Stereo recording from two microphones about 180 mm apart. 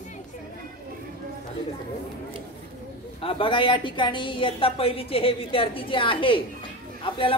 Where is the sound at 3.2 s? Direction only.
30° left (ahead or behind).